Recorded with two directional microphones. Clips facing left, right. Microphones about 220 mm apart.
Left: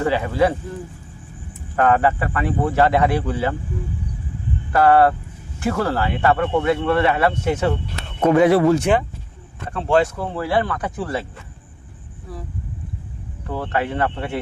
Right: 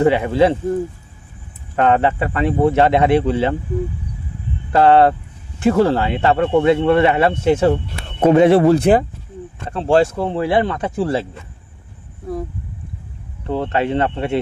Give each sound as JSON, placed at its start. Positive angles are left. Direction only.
{"t": 0.0, "sound": "speech", "side_deg": -20}
{"t": 1.7, "sound": "speech", "side_deg": -25}
{"t": 4.7, "sound": "speech", "side_deg": -25}
{"t": 13.5, "sound": "speech", "side_deg": -25}